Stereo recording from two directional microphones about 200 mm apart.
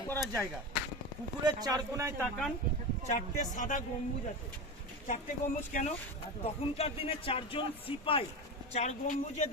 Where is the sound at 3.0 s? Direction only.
35° left (ahead or behind).